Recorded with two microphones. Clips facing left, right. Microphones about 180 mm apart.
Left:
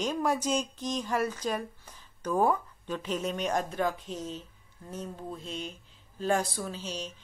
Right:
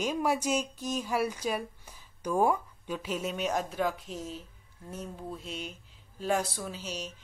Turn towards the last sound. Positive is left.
turn(degrees=-10)  # may be behind; listen again after turning